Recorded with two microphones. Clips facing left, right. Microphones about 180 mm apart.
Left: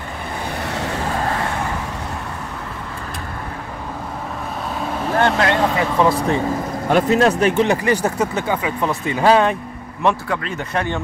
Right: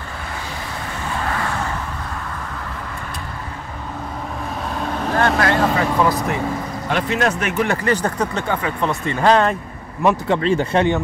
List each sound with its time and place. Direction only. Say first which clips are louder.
5.1 s vehicle: left 1 dB; 25° left (ahead or behind)
6.9 s speech: left 5 dB; 40° left (ahead or behind)
7.6 s speech: left 2 dB; 15° left (ahead or behind)
10.2 s speech: right 7 dB; 30° right (ahead or behind)